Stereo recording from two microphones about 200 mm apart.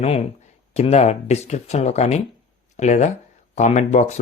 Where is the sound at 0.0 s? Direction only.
30° left (ahead or behind).